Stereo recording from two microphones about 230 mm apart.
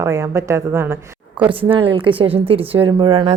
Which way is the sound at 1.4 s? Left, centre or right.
Right.